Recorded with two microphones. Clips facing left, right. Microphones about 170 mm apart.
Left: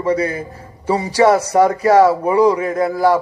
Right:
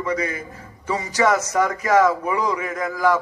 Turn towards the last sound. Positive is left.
turn(degrees=35)  # may be behind; listen again after turning